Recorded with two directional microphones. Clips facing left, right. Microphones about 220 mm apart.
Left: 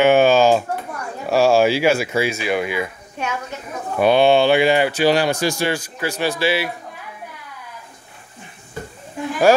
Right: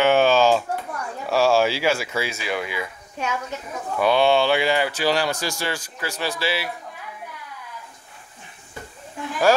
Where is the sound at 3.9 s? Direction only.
20° left (ahead or behind).